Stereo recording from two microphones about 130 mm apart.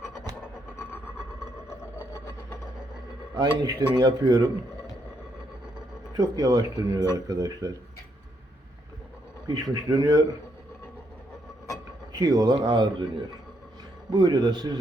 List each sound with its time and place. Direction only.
1.8 s vehicle: 25° left (ahead or behind)
3.3 s speech: 30° right (ahead or behind)
6.1 s speech: 30° right (ahead or behind)
9.5 s speech: 30° right (ahead or behind)
12.1 s speech: 30° right (ahead or behind)
14.1 s speech: 30° right (ahead or behind)